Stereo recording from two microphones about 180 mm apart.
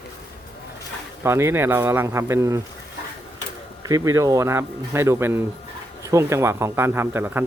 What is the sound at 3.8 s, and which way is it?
Speech, 20° right (ahead or behind).